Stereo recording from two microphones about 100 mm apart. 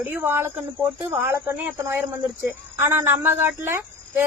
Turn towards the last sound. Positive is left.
turn(degrees=-25)  # may be behind; listen again after turning